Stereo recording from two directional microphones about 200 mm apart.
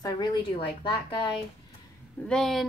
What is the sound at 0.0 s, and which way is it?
Speech, 20° left (ahead or behind).